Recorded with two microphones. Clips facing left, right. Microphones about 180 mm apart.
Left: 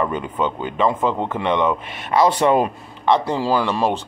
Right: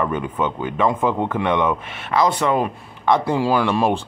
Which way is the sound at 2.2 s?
30° left (ahead or behind).